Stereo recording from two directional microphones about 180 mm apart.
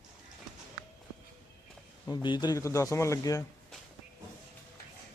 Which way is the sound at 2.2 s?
25° left (ahead or behind).